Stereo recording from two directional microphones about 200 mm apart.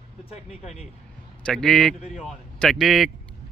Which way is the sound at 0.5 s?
35° left (ahead or behind).